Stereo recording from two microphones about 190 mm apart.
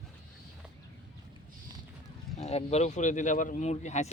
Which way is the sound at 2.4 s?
35° left (ahead or behind).